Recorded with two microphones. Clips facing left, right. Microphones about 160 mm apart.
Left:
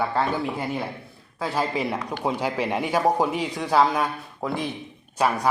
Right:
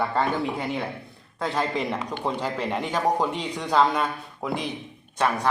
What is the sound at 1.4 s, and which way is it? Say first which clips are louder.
A man's voice: left 1 dB; 5° left (ahead or behind).